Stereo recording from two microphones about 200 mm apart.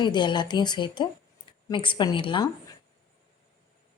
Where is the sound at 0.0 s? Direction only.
20° left (ahead or behind).